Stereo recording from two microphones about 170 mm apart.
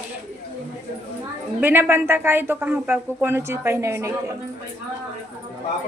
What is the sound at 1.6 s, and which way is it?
A woman's voice, 10° right (ahead or behind).